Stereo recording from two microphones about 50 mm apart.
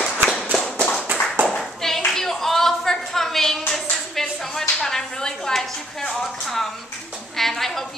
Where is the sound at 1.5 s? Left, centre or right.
Centre.